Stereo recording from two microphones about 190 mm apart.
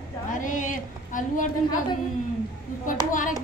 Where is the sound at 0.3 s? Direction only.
45° left (ahead or behind).